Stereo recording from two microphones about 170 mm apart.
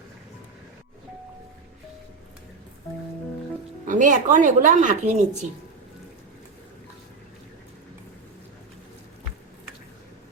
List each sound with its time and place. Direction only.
3.8 s speech: 50° right (ahead or behind)